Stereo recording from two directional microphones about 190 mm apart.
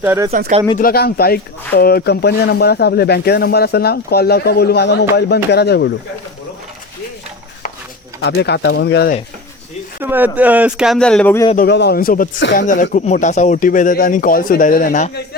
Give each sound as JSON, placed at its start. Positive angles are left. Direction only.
{"t": 0.0, "sound": "speech", "side_deg": -10}
{"t": 0.3, "sound": "speech", "side_deg": -45}
{"t": 0.8, "sound": "speech", "side_deg": 50}
{"t": 8.2, "sound": "speech", "side_deg": 60}
{"t": 10.0, "sound": "speech", "side_deg": -10}
{"t": 11.5, "sound": "speech", "side_deg": 60}